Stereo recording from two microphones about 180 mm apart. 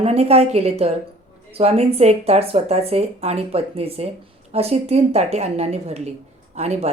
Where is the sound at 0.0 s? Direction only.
35° right (ahead or behind).